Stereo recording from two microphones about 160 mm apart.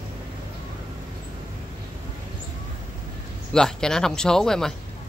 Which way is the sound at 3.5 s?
5° left (ahead or behind).